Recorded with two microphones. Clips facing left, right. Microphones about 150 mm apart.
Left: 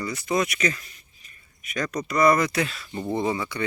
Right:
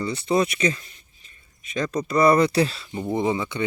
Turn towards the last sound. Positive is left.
turn(degrees=-20)  # may be behind; listen again after turning